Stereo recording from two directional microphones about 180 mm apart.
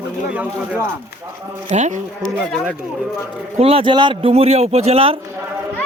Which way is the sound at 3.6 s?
35° right (ahead or behind).